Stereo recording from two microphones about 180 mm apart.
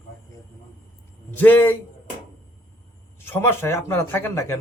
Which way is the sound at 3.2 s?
10° left (ahead or behind).